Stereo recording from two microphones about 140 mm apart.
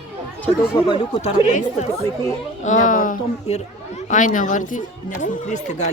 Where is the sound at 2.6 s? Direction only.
65° left (ahead or behind).